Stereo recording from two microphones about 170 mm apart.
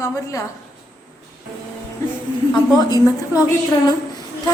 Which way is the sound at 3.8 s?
25° left (ahead or behind).